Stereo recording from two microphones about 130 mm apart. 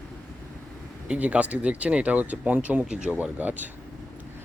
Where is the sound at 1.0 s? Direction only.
10° right (ahead or behind).